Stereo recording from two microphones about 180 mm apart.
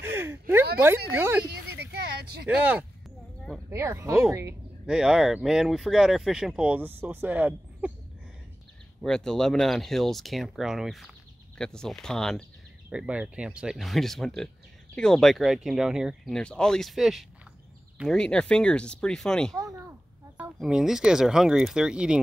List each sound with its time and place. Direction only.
0.0 s a woman's voice: 15° right (ahead or behind)
1.7 s a sound: 65° right (ahead or behind)
2.4 s speech: 10° right (ahead or behind)
4.8 s speech: 5° right (ahead or behind)
9.0 s speech: 5° left (ahead or behind)
19.5 s a sound: 20° right (ahead or behind)
20.5 s speech: centre (ahead or behind)